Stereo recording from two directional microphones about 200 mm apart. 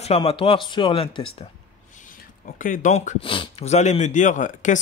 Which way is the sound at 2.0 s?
40° left (ahead or behind).